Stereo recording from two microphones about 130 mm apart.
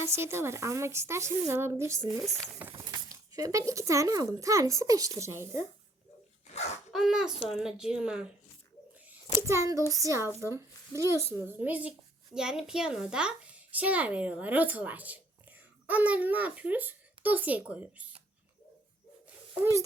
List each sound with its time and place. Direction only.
0.0 s speech: 20° right (ahead or behind)
2.0 s speech: 5° left (ahead or behind)
2.6 s speech: 15° right (ahead or behind)
2.8 s speech: 30° right (ahead or behind)
6.5 s a sound: 55° left (ahead or behind)
6.9 s speech: 5° right (ahead or behind)
7.3 s speech: 45° left (ahead or behind)
7.6 s speech: 5° right (ahead or behind)
9.5 s speech: 25° right (ahead or behind)